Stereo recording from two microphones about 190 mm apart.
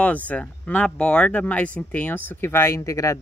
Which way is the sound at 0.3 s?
5° left (ahead or behind).